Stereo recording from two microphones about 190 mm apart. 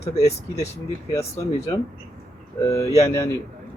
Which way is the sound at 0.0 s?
35° left (ahead or behind).